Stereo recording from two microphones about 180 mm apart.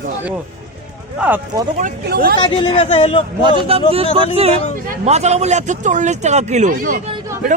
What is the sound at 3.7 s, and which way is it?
Speech, 30° right (ahead or behind).